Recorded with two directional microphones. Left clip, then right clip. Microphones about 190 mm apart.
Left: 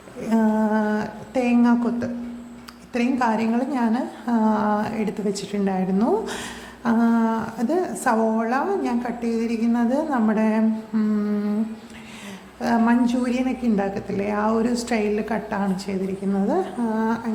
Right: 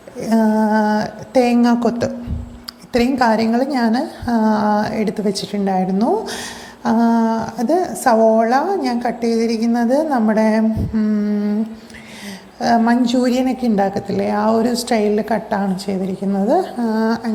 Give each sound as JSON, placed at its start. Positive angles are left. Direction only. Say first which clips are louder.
{"t": 0.2, "sound": "a sound", "louder": "right 5 dB", "side_deg": -20}
{"t": 2.9, "sound": "a woman's voice", "louder": "right 7 dB", "side_deg": -20}
{"t": 12.5, "sound": "a woman's voice", "louder": "right 6 dB", "side_deg": -15}